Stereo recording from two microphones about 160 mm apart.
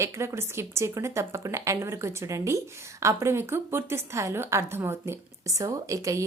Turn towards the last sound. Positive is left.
turn(degrees=-20)  # may be behind; listen again after turning